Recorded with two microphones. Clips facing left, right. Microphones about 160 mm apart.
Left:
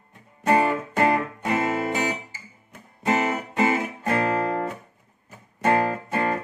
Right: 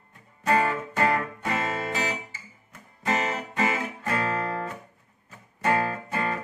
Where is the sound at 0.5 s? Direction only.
20° left (ahead or behind).